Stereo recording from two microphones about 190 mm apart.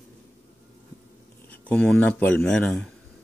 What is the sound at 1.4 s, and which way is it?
Speech, 5° left (ahead or behind).